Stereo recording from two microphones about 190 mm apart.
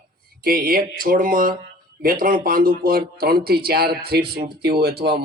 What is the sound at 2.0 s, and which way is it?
Speech, 50° right (ahead or behind).